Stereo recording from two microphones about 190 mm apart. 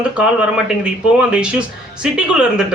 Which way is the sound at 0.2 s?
5° right (ahead or behind).